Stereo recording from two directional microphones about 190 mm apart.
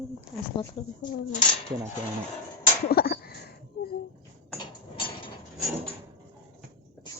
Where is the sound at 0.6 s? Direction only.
25° left (ahead or behind).